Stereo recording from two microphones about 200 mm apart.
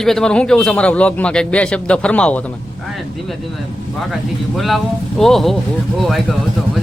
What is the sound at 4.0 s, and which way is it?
A man's voice, centre (ahead or behind).